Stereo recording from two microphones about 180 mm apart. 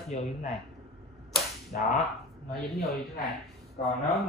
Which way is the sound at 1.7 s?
45° left (ahead or behind).